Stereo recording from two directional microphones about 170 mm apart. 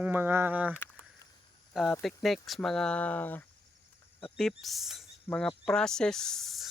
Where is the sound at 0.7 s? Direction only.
15° left (ahead or behind).